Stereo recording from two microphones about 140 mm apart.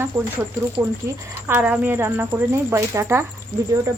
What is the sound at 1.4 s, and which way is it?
Speech, 15° right (ahead or behind).